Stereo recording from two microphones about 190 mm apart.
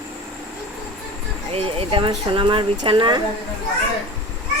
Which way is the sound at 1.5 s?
30° right (ahead or behind).